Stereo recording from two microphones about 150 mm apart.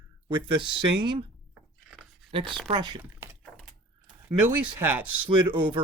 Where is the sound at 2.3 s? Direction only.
35° right (ahead or behind).